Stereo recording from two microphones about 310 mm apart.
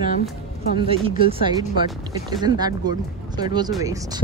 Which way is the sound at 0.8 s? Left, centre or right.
Centre.